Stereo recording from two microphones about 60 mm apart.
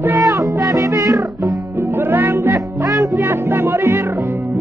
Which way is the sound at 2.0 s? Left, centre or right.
Right.